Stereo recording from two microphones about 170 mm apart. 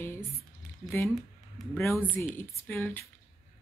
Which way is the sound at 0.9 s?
15° left (ahead or behind).